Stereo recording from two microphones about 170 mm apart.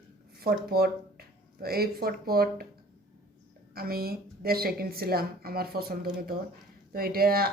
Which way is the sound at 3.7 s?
60° right (ahead or behind).